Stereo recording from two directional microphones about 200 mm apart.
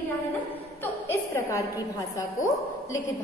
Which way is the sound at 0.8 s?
15° left (ahead or behind).